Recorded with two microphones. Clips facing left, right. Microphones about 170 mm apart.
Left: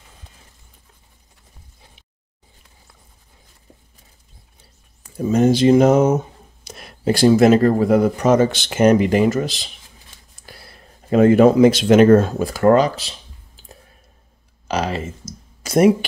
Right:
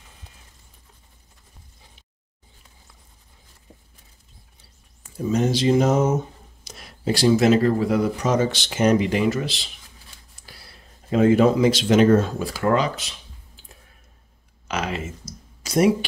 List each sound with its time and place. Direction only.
5.3 s mantra: 50° left (ahead or behind); by 6.1 s 70° left (ahead or behind)
6.6 s speech: 55° left (ahead or behind)
11.1 s speech: 55° left (ahead or behind); by 13.1 s 40° left (ahead or behind)
14.7 s speech: 35° left (ahead or behind)
15.6 s speech: 55° left (ahead or behind)